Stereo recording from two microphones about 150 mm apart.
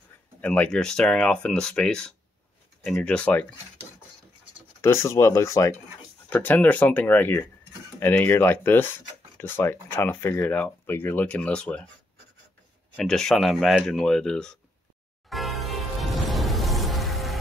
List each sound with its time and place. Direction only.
0.4 s speech: 10° left (ahead or behind)
4.8 s speech: 20° left (ahead or behind)
12.9 s speech: 5° left (ahead or behind)
15.2 s music: centre (ahead or behind)